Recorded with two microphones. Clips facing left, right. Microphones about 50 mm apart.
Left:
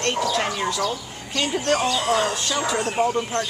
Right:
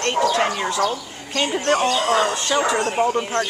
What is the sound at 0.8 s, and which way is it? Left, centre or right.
Speech, right.